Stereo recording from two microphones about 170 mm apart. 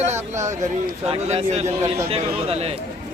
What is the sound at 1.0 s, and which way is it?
Speech, 35° right (ahead or behind).